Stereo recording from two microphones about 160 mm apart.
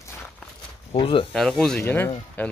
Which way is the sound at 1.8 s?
15° left (ahead or behind).